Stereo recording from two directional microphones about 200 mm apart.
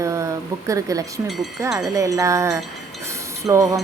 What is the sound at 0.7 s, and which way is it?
Speech, 15° right (ahead or behind).